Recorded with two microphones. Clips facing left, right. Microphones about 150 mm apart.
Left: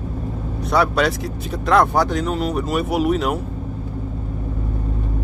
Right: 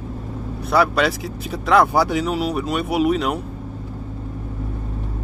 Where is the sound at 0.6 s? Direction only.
Centre (ahead or behind).